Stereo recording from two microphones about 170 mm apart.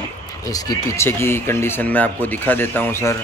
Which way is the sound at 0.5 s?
20° left (ahead or behind).